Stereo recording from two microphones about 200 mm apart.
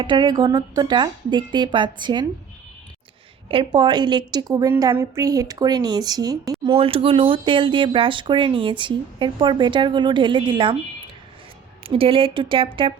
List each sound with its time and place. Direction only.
0.0 s speech: 25° right (ahead or behind)
3.5 s speech: 25° right (ahead or behind)
11.8 s speech: 25° right (ahead or behind)